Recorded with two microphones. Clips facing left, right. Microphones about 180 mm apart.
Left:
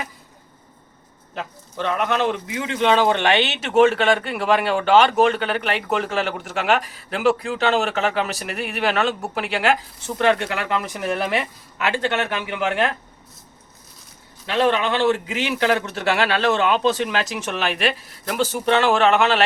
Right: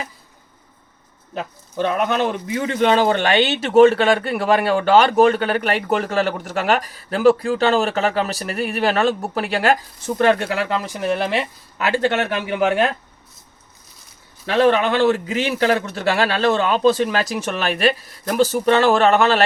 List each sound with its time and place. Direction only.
1.4 s speech: 45° right (ahead or behind)
14.4 s speech: 45° right (ahead or behind)